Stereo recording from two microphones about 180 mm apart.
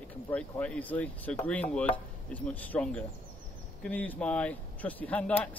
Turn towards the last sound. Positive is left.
turn(degrees=10)  # may be behind; listen again after turning